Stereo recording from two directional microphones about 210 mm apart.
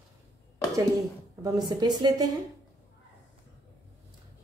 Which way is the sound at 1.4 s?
20° right (ahead or behind).